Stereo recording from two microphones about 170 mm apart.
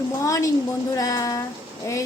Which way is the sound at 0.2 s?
15° left (ahead or behind).